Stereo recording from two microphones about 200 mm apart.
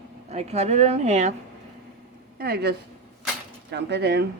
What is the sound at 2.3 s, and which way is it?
Speech, 50° right (ahead or behind).